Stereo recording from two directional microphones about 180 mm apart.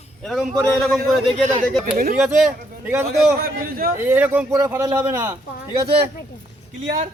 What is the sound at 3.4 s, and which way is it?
Speech, 55° right (ahead or behind).